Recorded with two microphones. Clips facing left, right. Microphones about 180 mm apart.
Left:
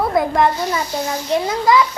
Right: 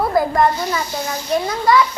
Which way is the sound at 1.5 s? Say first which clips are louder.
Even; 20° left (ahead or behind).